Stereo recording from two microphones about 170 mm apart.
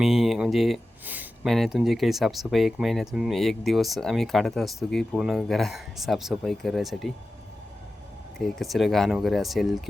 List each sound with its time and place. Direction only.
0.0 s a sound: centre (ahead or behind)
1.5 s speech: centre (ahead or behind)
8.4 s speech: centre (ahead or behind)